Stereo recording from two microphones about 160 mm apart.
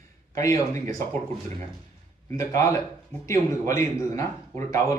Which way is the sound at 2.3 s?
20° left (ahead or behind).